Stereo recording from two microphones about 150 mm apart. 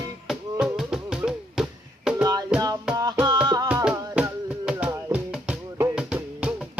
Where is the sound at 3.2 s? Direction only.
30° right (ahead or behind).